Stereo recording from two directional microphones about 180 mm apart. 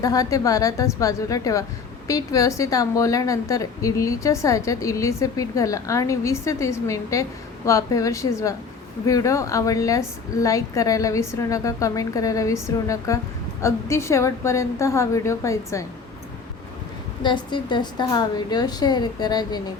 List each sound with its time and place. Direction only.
0.0 s a woman's voice: 20° left (ahead or behind)
17.2 s a woman's voice: 25° left (ahead or behind)